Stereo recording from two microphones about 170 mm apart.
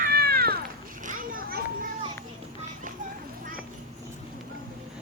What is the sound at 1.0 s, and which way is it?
Children playing, 55° right (ahead or behind).